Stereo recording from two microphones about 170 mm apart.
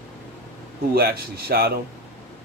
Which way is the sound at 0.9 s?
65° right (ahead or behind).